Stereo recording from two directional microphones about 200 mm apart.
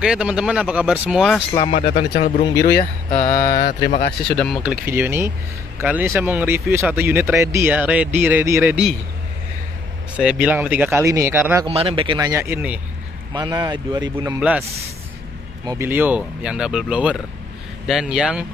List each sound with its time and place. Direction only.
0.0 s speech: 5° right (ahead or behind)
1.5 s mantra: 25° left (ahead or behind)
1.8 s speech: 50° left (ahead or behind)
3.1 s mantra: 20° left (ahead or behind)
3.5 s speech: 40° left (ahead or behind)
4.3 s speech: centre (ahead or behind)
4.8 s speech: 10° right (ahead or behind)
10.1 s speech: 5° right (ahead or behind)
11.6 s speech: 30° right (ahead or behind); by 12.8 s 10° right (ahead or behind)
13.3 s speech: 20° right (ahead or behind)
15.6 s speech: 15° right (ahead or behind)